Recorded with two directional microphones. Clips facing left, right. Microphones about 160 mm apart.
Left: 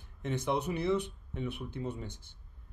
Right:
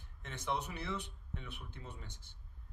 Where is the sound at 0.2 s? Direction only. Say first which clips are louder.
Left 7 dB; 15° left (ahead or behind).